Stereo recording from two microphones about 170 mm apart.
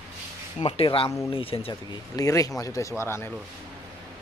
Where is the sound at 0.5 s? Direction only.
35° left (ahead or behind).